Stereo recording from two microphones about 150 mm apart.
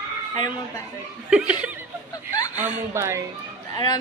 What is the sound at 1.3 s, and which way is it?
Speech, 5° right (ahead or behind).